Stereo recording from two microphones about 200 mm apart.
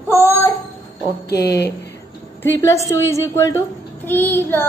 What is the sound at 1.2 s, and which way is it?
Speech, 55° left (ahead or behind).